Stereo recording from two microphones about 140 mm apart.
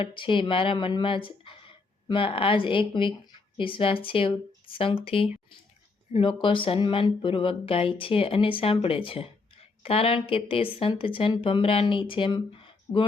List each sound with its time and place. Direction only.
0.0 s a woman's voice: 35° left (ahead or behind)